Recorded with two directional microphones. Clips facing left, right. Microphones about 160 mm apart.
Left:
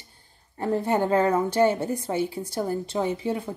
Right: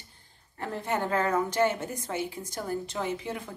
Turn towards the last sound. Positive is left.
turn(degrees=30)  # may be behind; listen again after turning